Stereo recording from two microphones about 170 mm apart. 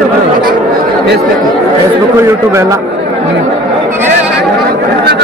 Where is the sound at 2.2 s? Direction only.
15° right (ahead or behind).